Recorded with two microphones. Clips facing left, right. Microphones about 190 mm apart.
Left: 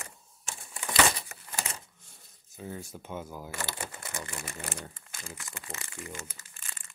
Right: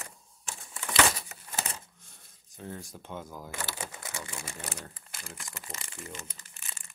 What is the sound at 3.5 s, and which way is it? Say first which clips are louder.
Speech: right 1 dB; 10° right (ahead or behind).